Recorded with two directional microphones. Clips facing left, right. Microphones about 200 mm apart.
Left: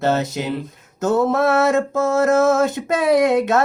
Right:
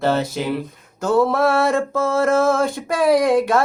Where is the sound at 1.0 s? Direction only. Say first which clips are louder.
Right 1 dB; 20° left (ahead or behind).